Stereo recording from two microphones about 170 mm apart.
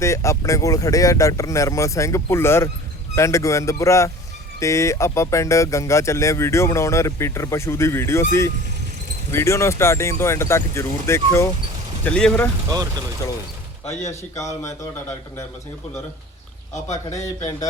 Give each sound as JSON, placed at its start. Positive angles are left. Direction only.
{"t": 0.0, "sound": "speech", "side_deg": 15}
{"t": 12.7, "sound": "speech", "side_deg": -25}
{"t": 14.1, "sound": "speech", "side_deg": 15}
{"t": 17.2, "sound": "speech", "side_deg": 20}